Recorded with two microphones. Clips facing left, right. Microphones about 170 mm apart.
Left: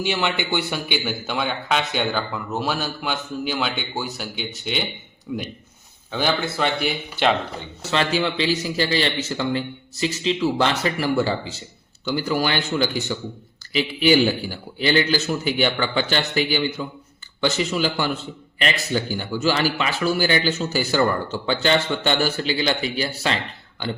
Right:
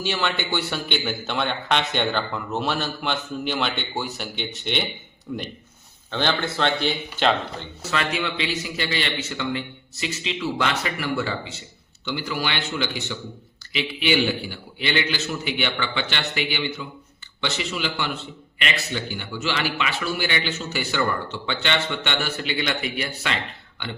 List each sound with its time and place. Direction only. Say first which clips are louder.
0.0 s a man's voice: left 2 dB; 15° left (ahead or behind)
7.9 s a man's voice: left 4 dB; 30° left (ahead or behind)